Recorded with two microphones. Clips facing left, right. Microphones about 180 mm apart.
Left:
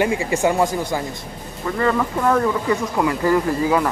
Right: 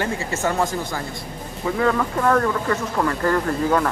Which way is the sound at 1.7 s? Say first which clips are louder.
Left 1 dB; centre (ahead or behind).